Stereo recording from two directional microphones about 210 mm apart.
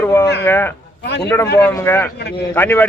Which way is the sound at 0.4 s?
10° left (ahead or behind).